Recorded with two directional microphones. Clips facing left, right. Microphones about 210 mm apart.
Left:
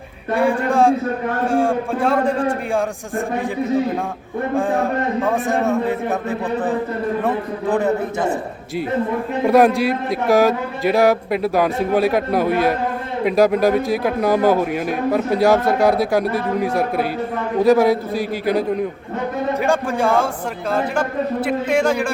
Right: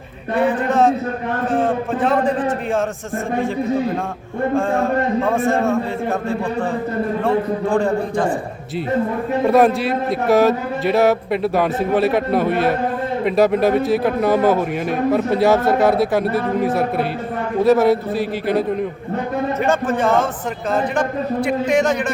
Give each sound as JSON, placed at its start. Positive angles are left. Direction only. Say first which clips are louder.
{"t": 0.3, "sound": "a man's voice", "louder": "even", "side_deg": 10}
{"t": 5.2, "sound": "a man's voice", "louder": "right 1 dB", "side_deg": 0}
{"t": 6.2, "sound": "a man's voice", "louder": "even", "side_deg": 20}
{"t": 7.8, "sound": "a man's voice", "louder": "right 1 dB", "side_deg": 20}
{"t": 9.5, "sound": "a man's voice", "louder": "left 1 dB", "side_deg": 0}
{"t": 19.6, "sound": "a man's voice", "louder": "right 1 dB", "side_deg": 10}